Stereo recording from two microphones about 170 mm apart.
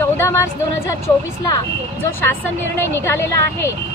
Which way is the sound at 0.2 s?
15° left (ahead or behind).